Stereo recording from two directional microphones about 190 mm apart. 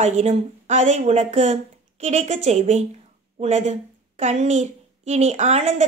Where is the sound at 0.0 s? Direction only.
35° right (ahead or behind).